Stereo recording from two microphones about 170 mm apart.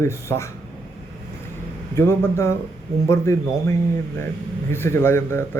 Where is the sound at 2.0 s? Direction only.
15° left (ahead or behind).